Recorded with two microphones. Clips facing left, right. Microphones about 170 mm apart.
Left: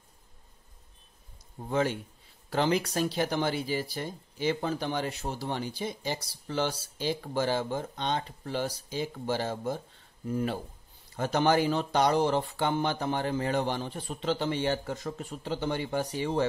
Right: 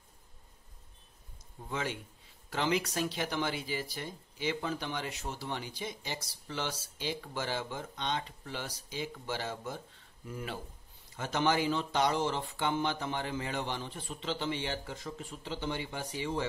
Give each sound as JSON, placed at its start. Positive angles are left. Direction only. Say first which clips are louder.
{"t": 1.6, "sound": "speech", "louder": "left 8 dB", "side_deg": 40}